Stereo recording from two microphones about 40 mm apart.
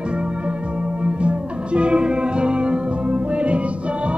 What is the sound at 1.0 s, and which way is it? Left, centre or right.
Music, right.